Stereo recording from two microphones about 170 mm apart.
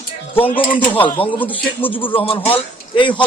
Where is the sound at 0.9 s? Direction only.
10° left (ahead or behind).